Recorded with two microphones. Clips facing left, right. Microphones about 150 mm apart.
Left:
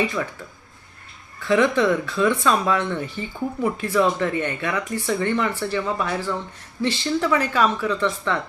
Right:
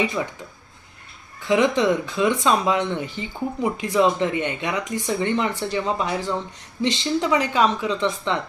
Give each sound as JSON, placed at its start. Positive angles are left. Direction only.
{"t": 0.0, "sound": "speech", "side_deg": -15}
{"t": 1.4, "sound": "speech", "side_deg": -15}